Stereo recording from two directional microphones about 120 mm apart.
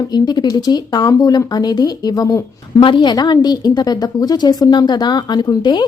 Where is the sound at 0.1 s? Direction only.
35° left (ahead or behind).